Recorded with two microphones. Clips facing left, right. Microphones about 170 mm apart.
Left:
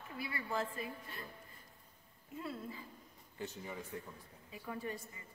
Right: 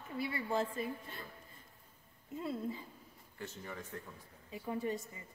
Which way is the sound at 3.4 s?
15° left (ahead or behind).